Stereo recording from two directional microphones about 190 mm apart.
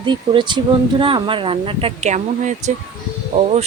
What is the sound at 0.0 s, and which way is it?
Speech, 25° right (ahead or behind).